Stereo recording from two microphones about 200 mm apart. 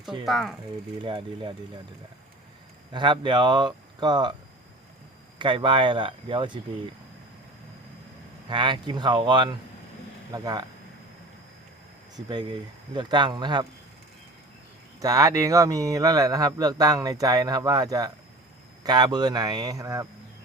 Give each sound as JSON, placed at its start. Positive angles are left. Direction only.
{"t": 0.3, "sound": "speech", "side_deg": 0}
{"t": 1.0, "sound": "speech", "side_deg": -25}
{"t": 2.9, "sound": "speech", "side_deg": -25}
{"t": 5.4, "sound": "speech", "side_deg": -25}
{"t": 8.4, "sound": "speech", "side_deg": -25}
{"t": 12.1, "sound": "speech", "side_deg": -20}
{"t": 15.0, "sound": "a man's voice", "side_deg": -15}